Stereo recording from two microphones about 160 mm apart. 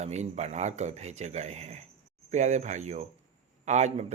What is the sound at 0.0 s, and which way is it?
Speech, 45° right (ahead or behind).